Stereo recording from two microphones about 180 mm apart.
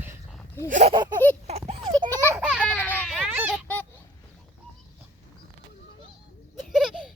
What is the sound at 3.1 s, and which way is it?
Children playing, 10° right (ahead or behind).